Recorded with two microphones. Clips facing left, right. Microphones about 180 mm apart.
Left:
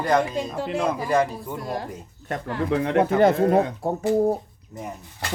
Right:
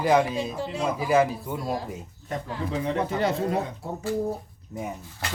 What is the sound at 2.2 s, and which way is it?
Speech, 65° left (ahead or behind).